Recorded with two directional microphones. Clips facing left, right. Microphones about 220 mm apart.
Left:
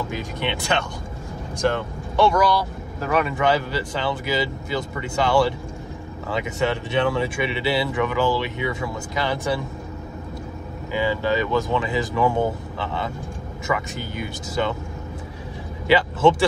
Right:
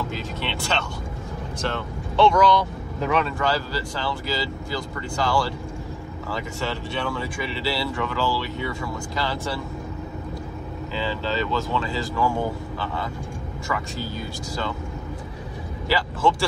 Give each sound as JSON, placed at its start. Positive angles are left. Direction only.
{"t": 0.1, "sound": "speech", "side_deg": 15}
{"t": 3.3, "sound": "speech", "side_deg": 20}
{"t": 10.9, "sound": "speech", "side_deg": 15}
{"t": 15.9, "sound": "speech", "side_deg": 20}